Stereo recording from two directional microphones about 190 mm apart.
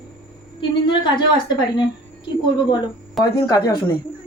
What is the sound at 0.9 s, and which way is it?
Speech, 25° left (ahead or behind).